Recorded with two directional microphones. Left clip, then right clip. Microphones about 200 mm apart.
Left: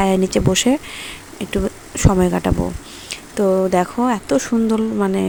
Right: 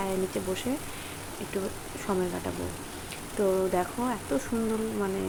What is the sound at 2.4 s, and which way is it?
Speech, 60° left (ahead or behind).